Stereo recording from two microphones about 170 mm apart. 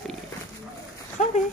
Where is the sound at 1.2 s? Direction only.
45° left (ahead or behind).